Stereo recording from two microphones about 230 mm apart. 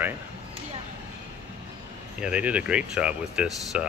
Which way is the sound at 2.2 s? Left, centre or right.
Centre.